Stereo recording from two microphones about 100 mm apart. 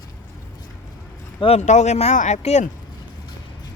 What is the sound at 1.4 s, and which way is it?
Speech, 85° left.